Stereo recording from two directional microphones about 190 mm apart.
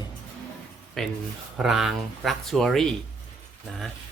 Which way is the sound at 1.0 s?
Centre (ahead or behind).